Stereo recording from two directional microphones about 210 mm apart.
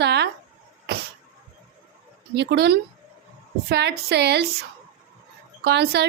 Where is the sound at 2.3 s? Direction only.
55° right (ahead or behind).